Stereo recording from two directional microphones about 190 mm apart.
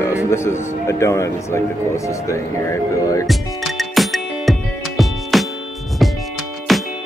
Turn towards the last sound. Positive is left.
turn(degrees=0)  # may be behind; listen again after turning